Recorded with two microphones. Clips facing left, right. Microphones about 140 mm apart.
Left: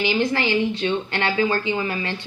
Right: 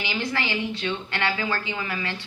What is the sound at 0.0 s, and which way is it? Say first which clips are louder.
Speech: left 7 dB; 25° left (ahead or behind).